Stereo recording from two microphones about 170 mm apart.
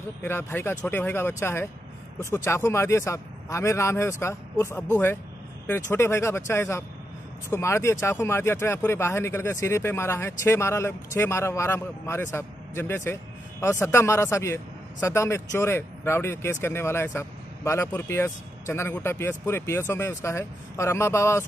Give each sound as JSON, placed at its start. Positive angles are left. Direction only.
{"t": 0.2, "sound": "speech", "side_deg": 15}